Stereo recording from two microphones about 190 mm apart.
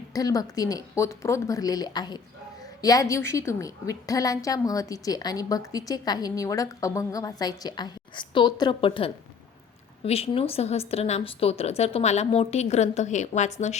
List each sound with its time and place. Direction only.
0.1 s a woman's voice: 20° left (ahead or behind); by 13.7 s 40° left (ahead or behind)